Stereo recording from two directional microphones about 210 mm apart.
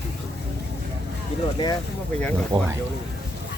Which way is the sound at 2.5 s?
25° right (ahead or behind).